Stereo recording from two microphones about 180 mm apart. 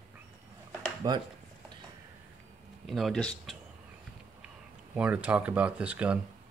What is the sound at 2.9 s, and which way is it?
Speech, centre (ahead or behind).